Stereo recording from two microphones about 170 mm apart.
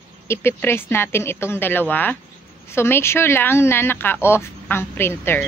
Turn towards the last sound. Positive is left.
turn(degrees=15)  # may be behind; listen again after turning